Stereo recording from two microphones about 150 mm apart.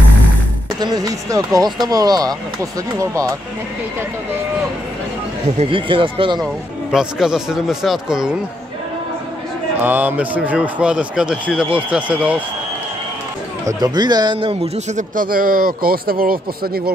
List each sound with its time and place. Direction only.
0.7 s speech: 25° right (ahead or behind)
5.6 s speech: 35° right (ahead or behind)
6.4 s speech: 5° right (ahead or behind)
9.8 s speech: 10° right (ahead or behind)
13.7 s speech: 25° right (ahead or behind)
15.0 s speech: 70° right (ahead or behind); by 16.9 s 90° right